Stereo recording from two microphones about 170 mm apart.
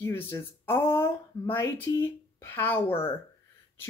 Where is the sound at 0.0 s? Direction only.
15° left (ahead or behind).